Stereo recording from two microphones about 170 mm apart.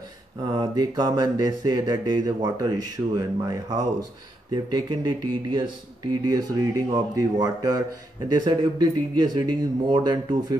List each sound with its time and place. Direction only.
0.5 s speech: 25° right (ahead or behind)